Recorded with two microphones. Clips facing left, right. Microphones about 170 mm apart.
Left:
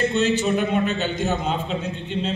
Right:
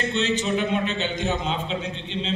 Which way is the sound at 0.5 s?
50° left (ahead or behind).